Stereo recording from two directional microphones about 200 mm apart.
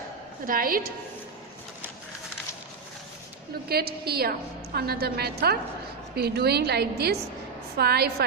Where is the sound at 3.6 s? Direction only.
50° right (ahead or behind).